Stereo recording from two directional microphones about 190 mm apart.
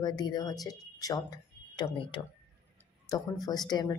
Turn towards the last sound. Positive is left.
turn(degrees=20)  # may be behind; listen again after turning